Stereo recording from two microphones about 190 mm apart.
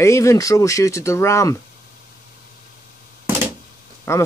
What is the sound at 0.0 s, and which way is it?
Speech, 15° left (ahead or behind).